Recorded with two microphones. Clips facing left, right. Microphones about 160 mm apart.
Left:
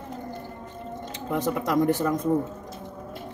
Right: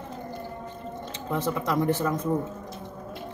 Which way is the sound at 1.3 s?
15° left (ahead or behind).